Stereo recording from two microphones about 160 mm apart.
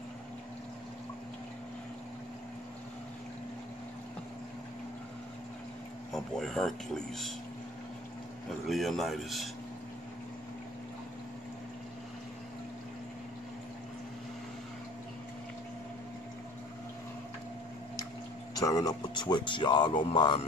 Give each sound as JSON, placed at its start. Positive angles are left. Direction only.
{"t": 6.1, "sound": "speech", "side_deg": 0}
{"t": 8.5, "sound": "speech", "side_deg": 0}
{"t": 18.5, "sound": "speech", "side_deg": 20}